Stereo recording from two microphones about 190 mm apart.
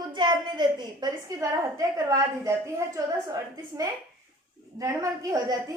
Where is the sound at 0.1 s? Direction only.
25° right (ahead or behind).